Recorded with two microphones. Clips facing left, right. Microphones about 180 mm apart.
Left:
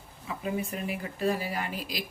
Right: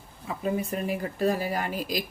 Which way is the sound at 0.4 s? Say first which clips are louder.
Right 4 dB; 40° right (ahead or behind).